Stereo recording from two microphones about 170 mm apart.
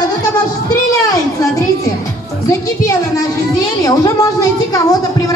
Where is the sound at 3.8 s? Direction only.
20° left (ahead or behind).